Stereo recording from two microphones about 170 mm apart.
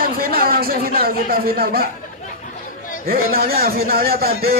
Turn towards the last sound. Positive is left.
turn(degrees=-65)  # may be behind; listen again after turning